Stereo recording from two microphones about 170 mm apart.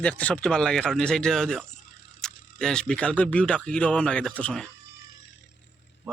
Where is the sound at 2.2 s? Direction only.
5° left (ahead or behind).